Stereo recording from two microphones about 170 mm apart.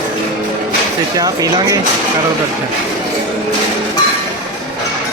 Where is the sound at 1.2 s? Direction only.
20° right (ahead or behind).